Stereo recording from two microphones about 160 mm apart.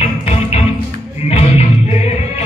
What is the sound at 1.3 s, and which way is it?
Music, 45° left (ahead or behind).